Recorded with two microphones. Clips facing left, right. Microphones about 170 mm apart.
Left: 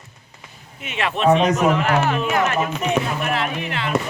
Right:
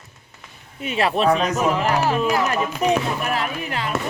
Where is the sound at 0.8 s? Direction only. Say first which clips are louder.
Right 2 dB; 35° right (ahead or behind).